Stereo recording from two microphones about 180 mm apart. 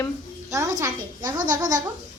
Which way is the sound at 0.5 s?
15° right (ahead or behind).